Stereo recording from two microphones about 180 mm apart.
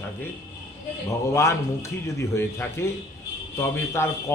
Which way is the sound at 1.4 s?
15° left (ahead or behind).